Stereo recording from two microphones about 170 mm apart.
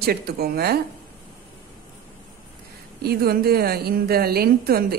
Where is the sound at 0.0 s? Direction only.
65° right (ahead or behind).